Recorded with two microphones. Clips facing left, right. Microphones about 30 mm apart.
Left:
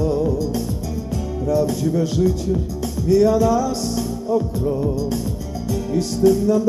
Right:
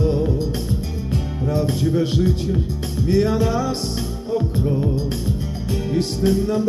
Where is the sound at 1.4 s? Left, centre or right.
Right.